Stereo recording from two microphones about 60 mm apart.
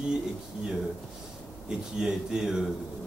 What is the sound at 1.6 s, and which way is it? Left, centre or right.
Speech, centre.